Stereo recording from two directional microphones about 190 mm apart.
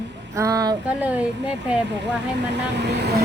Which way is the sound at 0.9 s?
10° right (ahead or behind).